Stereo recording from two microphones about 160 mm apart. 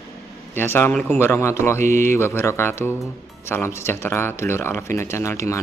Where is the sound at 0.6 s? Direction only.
15° left (ahead or behind).